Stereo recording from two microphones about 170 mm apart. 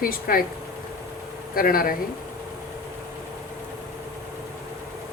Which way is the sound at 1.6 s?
55° left (ahead or behind).